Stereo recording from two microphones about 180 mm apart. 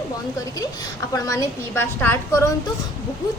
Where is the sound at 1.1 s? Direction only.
20° left (ahead or behind).